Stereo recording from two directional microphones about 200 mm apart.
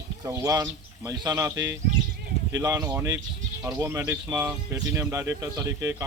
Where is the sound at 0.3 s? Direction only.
15° right (ahead or behind).